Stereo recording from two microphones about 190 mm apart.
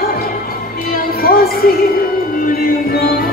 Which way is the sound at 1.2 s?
50° left (ahead or behind).